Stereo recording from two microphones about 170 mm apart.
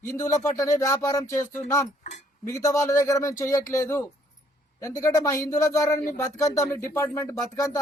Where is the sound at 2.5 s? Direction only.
20° left (ahead or behind).